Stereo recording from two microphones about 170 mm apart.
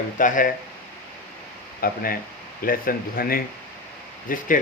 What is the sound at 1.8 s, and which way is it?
Speech, 60° left (ahead or behind).